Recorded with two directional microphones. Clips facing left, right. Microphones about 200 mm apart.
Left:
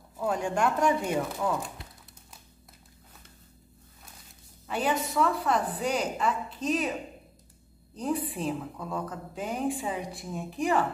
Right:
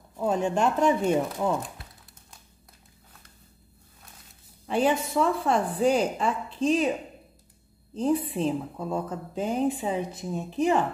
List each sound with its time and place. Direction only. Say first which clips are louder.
0.2 s a woman's voice: right 3 dB; 25° right (ahead or behind)
4.6 s a woman's voice: right 5 dB; 30° right (ahead or behind)
7.9 s a woman's voice: right 5 dB; 25° right (ahead or behind)